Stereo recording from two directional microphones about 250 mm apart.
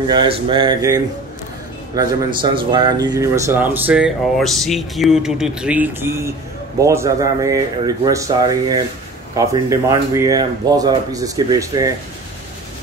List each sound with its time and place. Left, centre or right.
0.1 s speech: centre